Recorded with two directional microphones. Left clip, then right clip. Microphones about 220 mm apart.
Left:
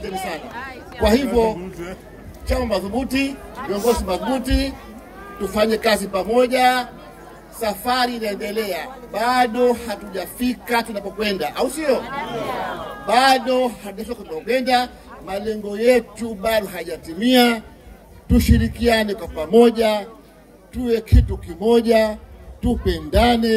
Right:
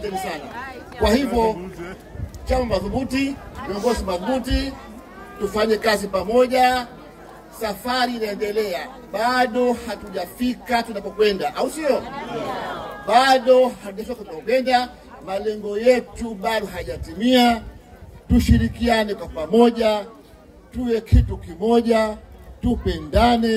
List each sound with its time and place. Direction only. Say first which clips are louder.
0.5 s speech: left 1 dB; 25° left (ahead or behind)
1.0 s a man's voice: left 2 dB; 40° left (ahead or behind)
12.0 s speech: left 2 dB; 25° left (ahead or behind)
13.0 s a man's voice: even; 45° left (ahead or behind)